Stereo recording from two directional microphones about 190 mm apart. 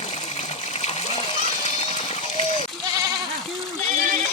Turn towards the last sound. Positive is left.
turn(degrees=-40)  # may be behind; listen again after turning